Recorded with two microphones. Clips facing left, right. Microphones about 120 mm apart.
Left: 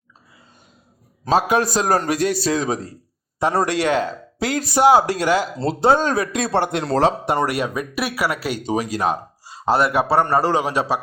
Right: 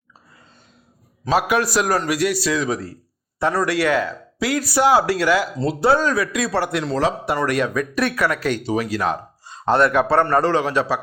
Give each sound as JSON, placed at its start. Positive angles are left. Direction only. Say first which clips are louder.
{"t": 1.3, "sound": "a man's voice", "louder": "left 1 dB", "side_deg": 30}
{"t": 1.9, "sound": "a man's voice", "louder": "left 1 dB", "side_deg": 45}
{"t": 6.8, "sound": "a man's voice", "louder": "left 5 dB", "side_deg": 40}
{"t": 7.4, "sound": "speech", "louder": "right 2 dB", "side_deg": 15}